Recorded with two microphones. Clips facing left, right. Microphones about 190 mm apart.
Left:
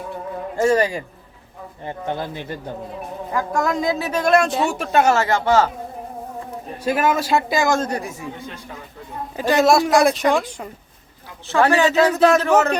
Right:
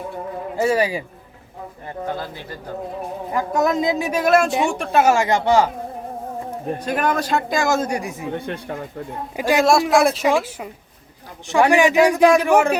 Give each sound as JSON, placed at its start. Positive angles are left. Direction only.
{"t": 0.5, "sound": "a man's voice", "side_deg": -5}
{"t": 1.9, "sound": "speech", "side_deg": 20}
{"t": 3.3, "sound": "a man's voice", "side_deg": -20}
{"t": 5.1, "sound": "a man's voice", "side_deg": -15}
{"t": 6.8, "sound": "a woman's voice", "side_deg": 5}
{"t": 7.8, "sound": "a man's voice", "side_deg": -10}
{"t": 8.3, "sound": "speech", "side_deg": -60}
{"t": 9.3, "sound": "a man's voice", "side_deg": -10}
{"t": 9.6, "sound": "a woman's voice", "side_deg": 0}
{"t": 11.4, "sound": "a man's voice", "side_deg": -15}